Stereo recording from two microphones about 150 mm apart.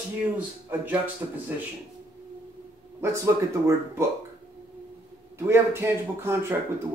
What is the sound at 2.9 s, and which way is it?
Speech, 20° right (ahead or behind).